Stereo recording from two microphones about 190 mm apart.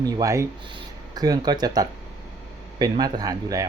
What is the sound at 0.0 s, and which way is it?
Speech, 15° right (ahead or behind).